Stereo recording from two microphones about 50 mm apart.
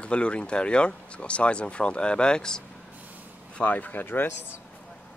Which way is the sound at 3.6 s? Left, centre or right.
Left.